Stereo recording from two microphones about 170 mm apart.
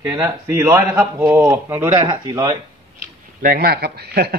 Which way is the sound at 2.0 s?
25° right (ahead or behind).